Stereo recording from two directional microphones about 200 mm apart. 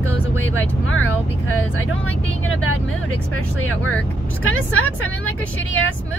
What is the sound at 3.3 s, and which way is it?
Speech, 90° left.